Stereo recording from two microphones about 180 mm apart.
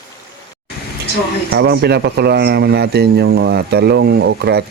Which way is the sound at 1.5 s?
65° right (ahead or behind).